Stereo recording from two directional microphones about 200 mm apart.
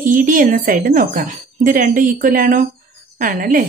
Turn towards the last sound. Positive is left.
turn(degrees=-40)  # may be behind; listen again after turning